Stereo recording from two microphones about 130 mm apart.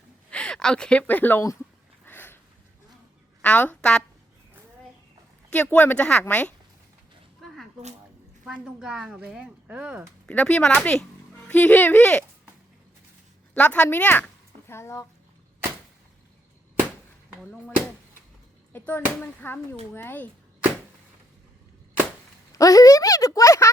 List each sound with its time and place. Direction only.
0.3 s speech: 10° left (ahead or behind)
2.0 s a sound: 15° left (ahead or behind)
3.4 s speech: 10° left (ahead or behind)
5.5 s speech: 10° left (ahead or behind)
8.4 s speech: 5° right (ahead or behind)
10.2 s speech: 10° left (ahead or behind)
13.5 s speech: 10° left (ahead or behind)
18.7 s speech: 15° left (ahead or behind)
22.5 s speech: 25° left (ahead or behind)